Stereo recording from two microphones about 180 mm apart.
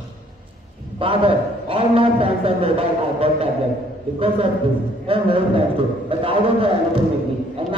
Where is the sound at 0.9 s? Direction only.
30° right (ahead or behind).